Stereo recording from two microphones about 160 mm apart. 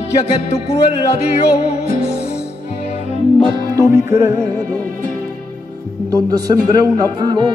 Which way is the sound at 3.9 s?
20° right (ahead or behind).